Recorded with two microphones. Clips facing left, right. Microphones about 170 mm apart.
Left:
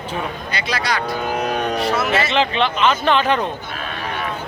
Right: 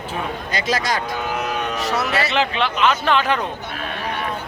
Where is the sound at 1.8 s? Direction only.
40° right (ahead or behind).